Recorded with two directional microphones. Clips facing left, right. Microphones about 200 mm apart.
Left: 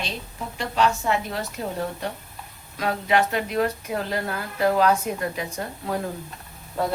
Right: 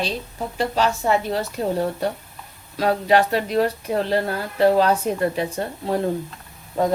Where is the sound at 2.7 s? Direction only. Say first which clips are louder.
Right 5 dB; 35° right (ahead or behind).